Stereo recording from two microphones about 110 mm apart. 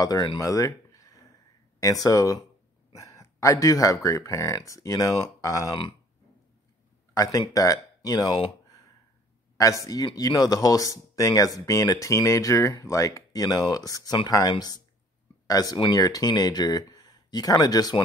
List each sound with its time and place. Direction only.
0.0 s speech: 35° left (ahead or behind)
7.2 s speech: 30° left (ahead or behind)
9.6 s speech: 30° left (ahead or behind)